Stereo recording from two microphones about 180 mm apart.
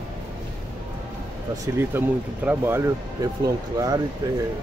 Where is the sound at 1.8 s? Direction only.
10° right (ahead or behind).